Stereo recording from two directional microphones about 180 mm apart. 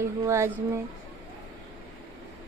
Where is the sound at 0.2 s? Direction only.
15° right (ahead or behind).